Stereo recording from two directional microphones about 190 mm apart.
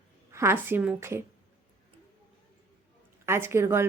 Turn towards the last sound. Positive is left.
turn(degrees=-15)  # may be behind; listen again after turning